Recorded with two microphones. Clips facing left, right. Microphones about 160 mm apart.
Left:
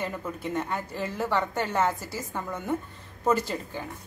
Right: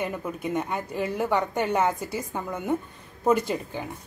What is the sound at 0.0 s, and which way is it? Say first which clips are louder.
A woman's voice: right 3 dB; 10° right (ahead or behind).